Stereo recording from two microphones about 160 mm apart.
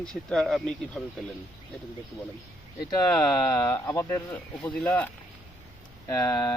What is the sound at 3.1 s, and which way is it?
Speech, 5° left (ahead or behind).